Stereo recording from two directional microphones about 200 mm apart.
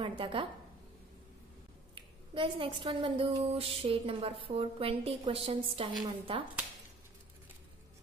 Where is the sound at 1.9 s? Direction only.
25° right (ahead or behind).